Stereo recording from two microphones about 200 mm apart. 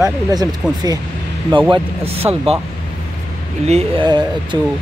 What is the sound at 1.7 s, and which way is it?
Speech, 30° right (ahead or behind).